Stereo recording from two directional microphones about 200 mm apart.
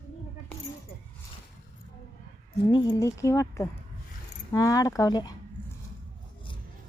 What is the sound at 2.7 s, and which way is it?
Speech, 20° left (ahead or behind).